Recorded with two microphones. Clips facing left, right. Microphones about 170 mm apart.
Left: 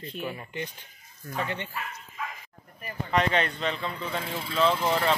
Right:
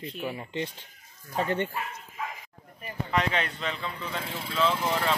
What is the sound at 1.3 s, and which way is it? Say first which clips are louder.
Speech: right 5 dB; 40° right (ahead or behind).